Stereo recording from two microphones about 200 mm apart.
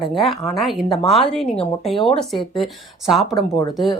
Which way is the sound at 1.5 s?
30° left (ahead or behind).